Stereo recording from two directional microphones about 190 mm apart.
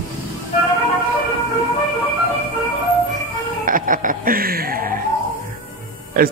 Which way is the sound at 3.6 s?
45° right (ahead or behind).